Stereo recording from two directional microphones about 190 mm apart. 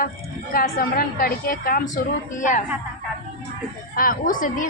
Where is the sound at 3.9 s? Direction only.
50° left (ahead or behind).